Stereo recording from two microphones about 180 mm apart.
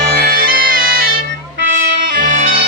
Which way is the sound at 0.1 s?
60° right (ahead or behind).